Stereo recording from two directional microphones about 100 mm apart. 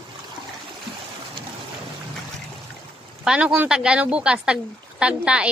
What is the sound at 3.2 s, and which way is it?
Speech, 5° right (ahead or behind).